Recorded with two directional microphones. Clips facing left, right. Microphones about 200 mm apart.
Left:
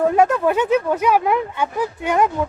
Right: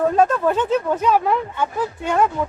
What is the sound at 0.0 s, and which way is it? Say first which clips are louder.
Speech: left 1 dB; 10° left (ahead or behind).